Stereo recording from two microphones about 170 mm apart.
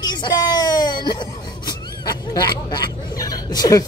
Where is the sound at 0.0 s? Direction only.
25° left (ahead or behind).